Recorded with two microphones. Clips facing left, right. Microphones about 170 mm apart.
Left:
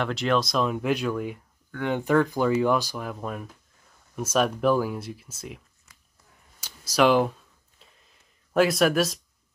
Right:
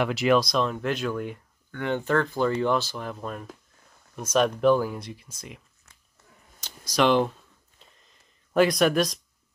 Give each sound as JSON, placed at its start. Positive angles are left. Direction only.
{"t": 0.0, "sound": "speech", "side_deg": -5}
{"t": 6.6, "sound": "a sound", "side_deg": 5}
{"t": 8.5, "sound": "speech", "side_deg": 0}